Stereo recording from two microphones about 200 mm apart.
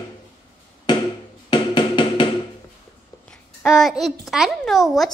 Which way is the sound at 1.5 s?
25° left (ahead or behind).